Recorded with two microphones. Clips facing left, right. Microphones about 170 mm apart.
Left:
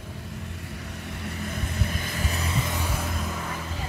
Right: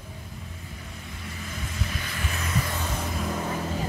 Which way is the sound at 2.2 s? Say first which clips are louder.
Even; 35° left (ahead or behind).